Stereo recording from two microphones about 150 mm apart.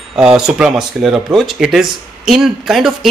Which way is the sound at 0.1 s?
5° right (ahead or behind).